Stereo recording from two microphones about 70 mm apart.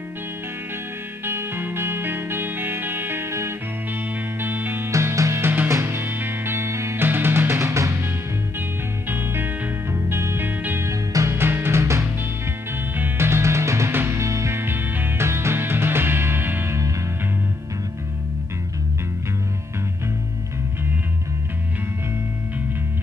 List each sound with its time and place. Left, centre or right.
1.2 s music: right
4.4 s music: right
4.9 s music: right
9.1 s music: right
10.9 s music: right